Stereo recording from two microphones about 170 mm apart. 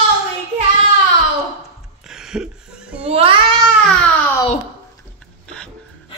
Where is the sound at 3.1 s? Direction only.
35° right (ahead or behind).